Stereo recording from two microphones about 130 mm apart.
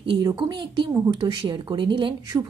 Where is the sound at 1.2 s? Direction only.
40° right (ahead or behind).